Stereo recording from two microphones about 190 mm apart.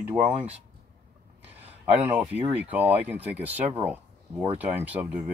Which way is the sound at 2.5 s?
10° right (ahead or behind).